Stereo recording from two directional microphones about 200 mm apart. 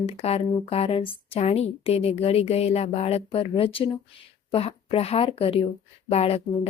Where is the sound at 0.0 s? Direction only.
30° left (ahead or behind).